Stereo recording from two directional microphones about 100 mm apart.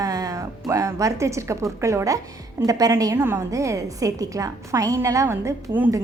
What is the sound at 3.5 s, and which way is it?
A woman's voice, 35° right (ahead or behind).